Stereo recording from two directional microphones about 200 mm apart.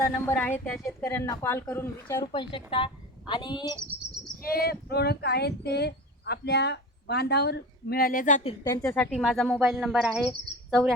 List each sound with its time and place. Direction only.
0.1 s a woman's voice: 10° left (ahead or behind)
4.5 s speech: 50° left (ahead or behind)
8.6 s a woman's voice: 15° left (ahead or behind)